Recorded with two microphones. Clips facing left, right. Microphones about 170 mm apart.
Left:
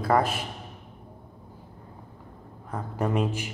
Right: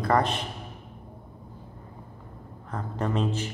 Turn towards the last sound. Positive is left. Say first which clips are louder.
# left 1 dB
turn(degrees=10)  # may be behind; listen again after turning